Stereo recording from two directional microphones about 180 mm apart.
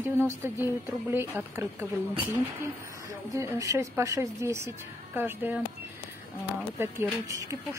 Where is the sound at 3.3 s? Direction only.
15° right (ahead or behind).